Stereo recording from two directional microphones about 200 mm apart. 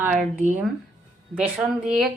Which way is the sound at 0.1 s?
40° right (ahead or behind).